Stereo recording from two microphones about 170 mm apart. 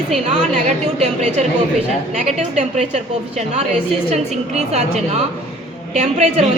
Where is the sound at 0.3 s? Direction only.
45° right (ahead or behind).